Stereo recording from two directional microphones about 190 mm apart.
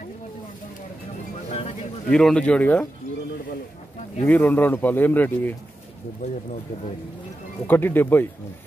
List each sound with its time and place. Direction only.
1.5 s a sound: 35° left (ahead or behind)
2.0 s speech: 5° left (ahead or behind)
4.2 s speech: 10° left (ahead or behind)
6.2 s speech: 35° left (ahead or behind)
7.6 s speech: 10° left (ahead or behind)